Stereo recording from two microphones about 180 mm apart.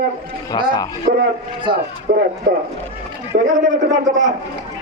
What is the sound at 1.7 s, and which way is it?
Speech, 60° right (ahead or behind).